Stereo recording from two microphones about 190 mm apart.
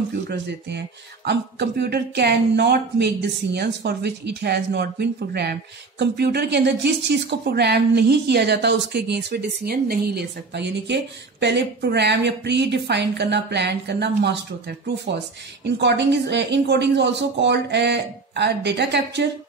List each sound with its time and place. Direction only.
0.1 s speech: 60° right (ahead or behind)
15.6 s speech: 65° right (ahead or behind)